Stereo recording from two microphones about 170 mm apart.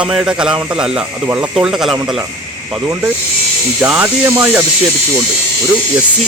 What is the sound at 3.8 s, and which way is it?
Speech, 10° right (ahead or behind).